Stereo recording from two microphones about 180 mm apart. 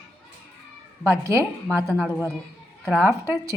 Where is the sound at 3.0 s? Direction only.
15° right (ahead or behind).